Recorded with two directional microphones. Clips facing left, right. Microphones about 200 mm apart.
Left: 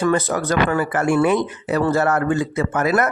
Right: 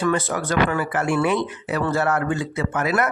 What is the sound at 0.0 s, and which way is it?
Speech, 40° left (ahead or behind).